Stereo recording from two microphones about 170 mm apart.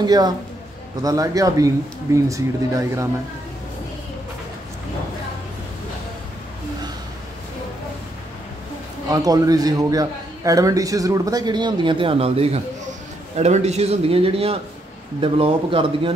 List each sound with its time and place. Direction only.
0.0 s a man's voice: 25° right (ahead or behind)
9.1 s a man's voice: 20° right (ahead or behind)